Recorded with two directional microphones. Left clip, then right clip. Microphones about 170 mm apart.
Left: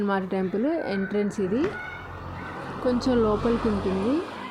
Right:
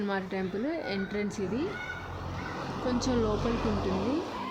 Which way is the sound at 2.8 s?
25° left (ahead or behind).